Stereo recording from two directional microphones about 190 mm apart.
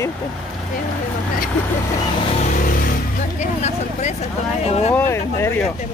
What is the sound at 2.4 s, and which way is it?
Vehicle, 45° left (ahead or behind).